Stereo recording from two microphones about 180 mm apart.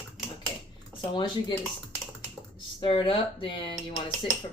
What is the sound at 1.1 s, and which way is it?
Cutlery, 25° left (ahead or behind).